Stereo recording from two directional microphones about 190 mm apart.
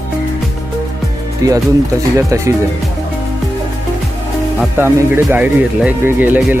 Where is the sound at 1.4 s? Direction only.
20° right (ahead or behind).